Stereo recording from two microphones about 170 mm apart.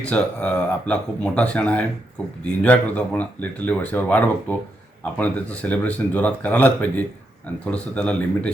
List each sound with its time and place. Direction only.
0.0 s speech: 5° left (ahead or behind)